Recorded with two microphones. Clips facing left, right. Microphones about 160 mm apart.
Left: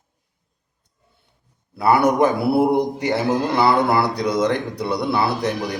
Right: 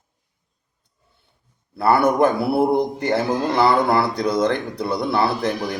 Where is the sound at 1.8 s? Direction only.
5° left (ahead or behind).